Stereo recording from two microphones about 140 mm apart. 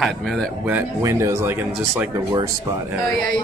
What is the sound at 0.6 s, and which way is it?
Speech, 15° right (ahead or behind).